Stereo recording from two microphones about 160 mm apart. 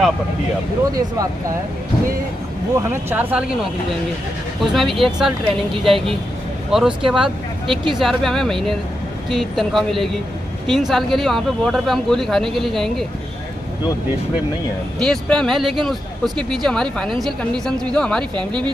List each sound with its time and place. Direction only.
0.9 s speech: 20° right (ahead or behind)
2.9 s speech: 15° right (ahead or behind)
4.7 s speech: centre (ahead or behind)
15.0 s speech: 5° left (ahead or behind)
18.3 s speech: 30° right (ahead or behind)